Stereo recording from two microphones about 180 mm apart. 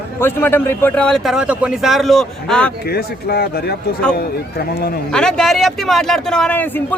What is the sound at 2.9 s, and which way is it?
A man's voice, 60° left (ahead or behind).